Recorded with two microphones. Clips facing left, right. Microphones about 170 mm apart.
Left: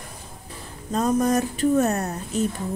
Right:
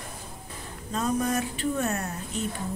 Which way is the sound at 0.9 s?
40° left (ahead or behind).